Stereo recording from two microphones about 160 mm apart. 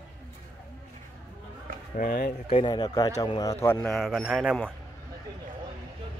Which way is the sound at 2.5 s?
30° left (ahead or behind).